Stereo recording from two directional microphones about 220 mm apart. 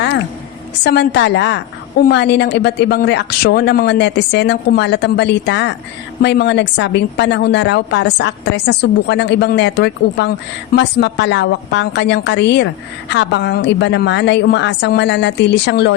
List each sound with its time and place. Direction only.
0.9 s a woman's voice: 50° left (ahead or behind)